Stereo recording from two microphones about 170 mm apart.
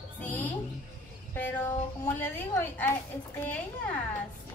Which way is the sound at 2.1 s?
10° left (ahead or behind).